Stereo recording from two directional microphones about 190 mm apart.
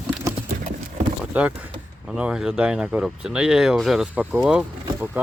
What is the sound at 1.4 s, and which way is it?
Speech, 5° right (ahead or behind).